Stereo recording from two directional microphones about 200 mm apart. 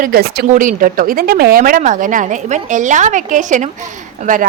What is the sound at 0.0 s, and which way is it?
A woman's voice, 50° right (ahead or behind).